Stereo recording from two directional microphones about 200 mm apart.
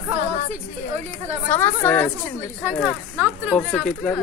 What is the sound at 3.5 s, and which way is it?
Speech, 5° left (ahead or behind).